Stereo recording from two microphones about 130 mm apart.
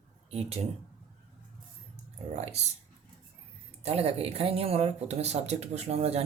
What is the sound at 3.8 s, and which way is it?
Speech, 50° right (ahead or behind).